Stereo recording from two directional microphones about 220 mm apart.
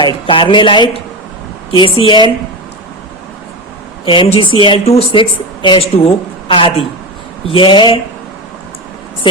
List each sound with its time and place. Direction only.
0.0 s a woman's voice: 25° left (ahead or behind)
4.0 s a woman's voice: 25° left (ahead or behind)
9.2 s a woman's voice: 20° left (ahead or behind)